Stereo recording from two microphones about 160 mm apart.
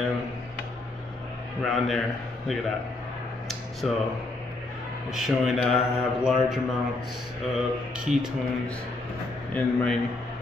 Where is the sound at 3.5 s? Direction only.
Centre (ahead or behind).